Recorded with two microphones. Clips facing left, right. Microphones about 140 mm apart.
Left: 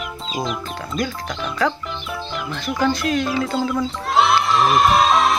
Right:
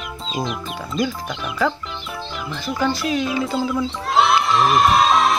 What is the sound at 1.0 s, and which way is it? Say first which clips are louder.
Speech: right 1 dB; 5° right (ahead or behind).